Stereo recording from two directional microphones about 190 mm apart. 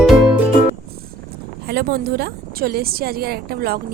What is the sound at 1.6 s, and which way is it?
Speech, 55° right (ahead or behind).